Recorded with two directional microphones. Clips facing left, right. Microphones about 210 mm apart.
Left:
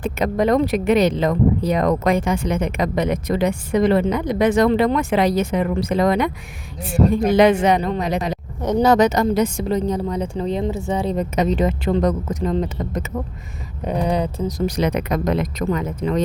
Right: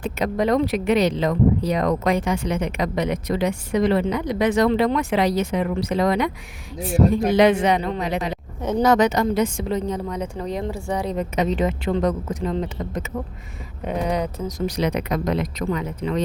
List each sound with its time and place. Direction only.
0.0 s speech: 50° left (ahead or behind)
7.3 s a woman's voice: 50° left (ahead or behind); by 14.5 s 30° left (ahead or behind)
14.8 s speech: 50° left (ahead or behind)